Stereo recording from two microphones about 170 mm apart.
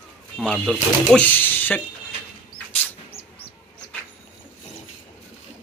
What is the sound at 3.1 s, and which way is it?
Bird, 35° left (ahead or behind).